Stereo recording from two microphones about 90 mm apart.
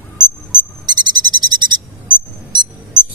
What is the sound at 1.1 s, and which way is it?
Cricket, 50° right (ahead or behind).